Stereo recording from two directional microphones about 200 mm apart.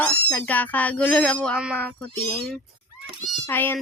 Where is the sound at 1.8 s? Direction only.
5° left (ahead or behind).